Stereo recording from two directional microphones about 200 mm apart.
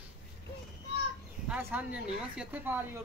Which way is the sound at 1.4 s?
10° right (ahead or behind).